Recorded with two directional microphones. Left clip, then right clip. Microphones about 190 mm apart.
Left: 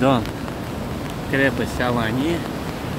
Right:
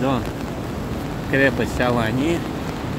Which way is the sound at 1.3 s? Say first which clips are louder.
Right 2 dB; centre (ahead or behind).